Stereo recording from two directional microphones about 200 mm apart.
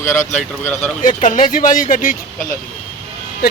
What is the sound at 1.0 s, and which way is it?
Speech, 40° left (ahead or behind).